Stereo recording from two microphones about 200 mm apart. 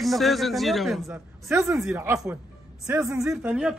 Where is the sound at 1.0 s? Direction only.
10° right (ahead or behind).